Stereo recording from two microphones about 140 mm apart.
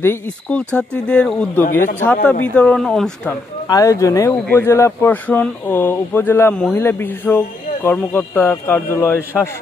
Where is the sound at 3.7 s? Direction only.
25° left (ahead or behind).